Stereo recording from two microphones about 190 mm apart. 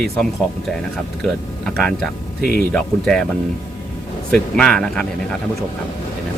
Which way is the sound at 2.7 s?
5° left (ahead or behind).